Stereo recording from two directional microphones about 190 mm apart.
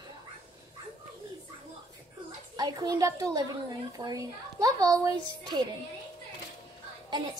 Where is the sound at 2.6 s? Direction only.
20° right (ahead or behind).